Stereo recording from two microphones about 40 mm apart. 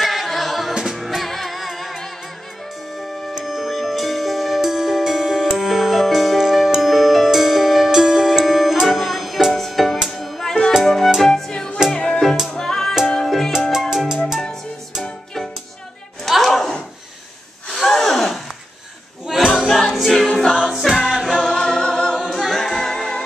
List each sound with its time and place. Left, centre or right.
0.0 s music: centre
3.3 s music: centre
11.5 s music: centre
12.4 s music: centre
13.5 s salsa music: centre
16.3 s a sound: centre
19.3 s choir: centre
19.7 s choir: centre
20.6 s music: centre
21.4 s music: centre
22.3 s a capella: centre